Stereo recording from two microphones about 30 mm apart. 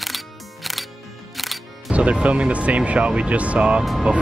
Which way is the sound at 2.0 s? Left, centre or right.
Right.